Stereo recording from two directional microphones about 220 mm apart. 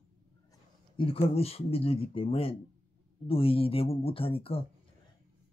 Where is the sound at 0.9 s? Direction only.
25° left (ahead or behind).